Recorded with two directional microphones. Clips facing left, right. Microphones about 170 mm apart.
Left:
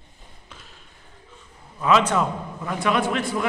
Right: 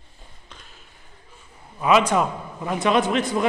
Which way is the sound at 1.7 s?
15° right (ahead or behind).